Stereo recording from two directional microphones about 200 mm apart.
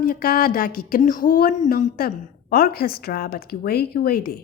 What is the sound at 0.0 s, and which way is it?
Speech, 45° left (ahead or behind).